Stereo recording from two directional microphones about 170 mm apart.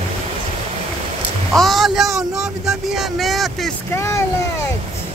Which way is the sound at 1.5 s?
Centre (ahead or behind).